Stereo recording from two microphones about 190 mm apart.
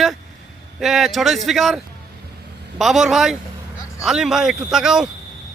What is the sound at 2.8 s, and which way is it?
Speech, centre (ahead or behind).